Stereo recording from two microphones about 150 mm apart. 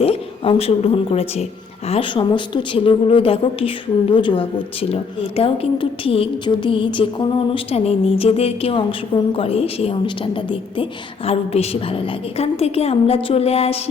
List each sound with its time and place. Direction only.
0.0 s a woman's voice: 40° left (ahead or behind)